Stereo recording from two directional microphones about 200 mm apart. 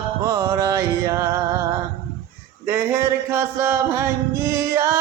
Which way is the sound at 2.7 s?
10° right (ahead or behind).